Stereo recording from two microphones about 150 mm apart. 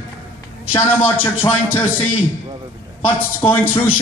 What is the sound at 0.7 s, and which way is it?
A man's voice, 10° left (ahead or behind).